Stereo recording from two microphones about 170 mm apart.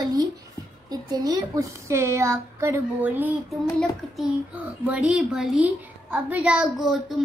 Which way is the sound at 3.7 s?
Centre (ahead or behind).